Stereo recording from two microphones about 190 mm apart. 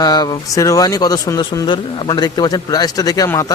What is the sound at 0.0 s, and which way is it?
A man's voice, 20° left (ahead or behind).